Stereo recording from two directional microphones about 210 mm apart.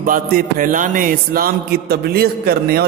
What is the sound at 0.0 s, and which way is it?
Music, 40° right (ahead or behind).